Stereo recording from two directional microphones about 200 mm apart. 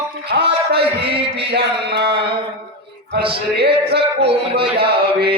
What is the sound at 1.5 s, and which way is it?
Mantra, 55° right (ahead or behind).